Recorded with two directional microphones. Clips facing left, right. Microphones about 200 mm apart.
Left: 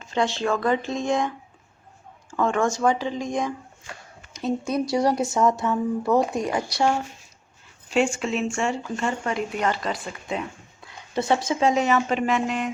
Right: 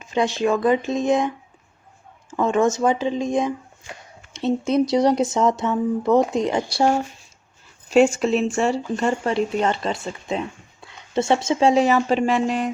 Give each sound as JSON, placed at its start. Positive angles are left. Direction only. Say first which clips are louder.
{"t": 0.0, "sound": "speech", "louder": "right 4 dB", "side_deg": -20}
{"t": 2.3, "sound": "speech", "louder": "right 4 dB", "side_deg": -20}
{"t": 7.9, "sound": "speech", "louder": "right 7 dB", "side_deg": -40}